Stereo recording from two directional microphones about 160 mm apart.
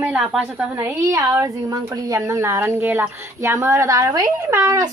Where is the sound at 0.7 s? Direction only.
15° right (ahead or behind).